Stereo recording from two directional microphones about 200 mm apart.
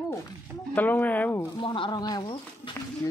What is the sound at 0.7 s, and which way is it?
Speech, 10° left (ahead or behind).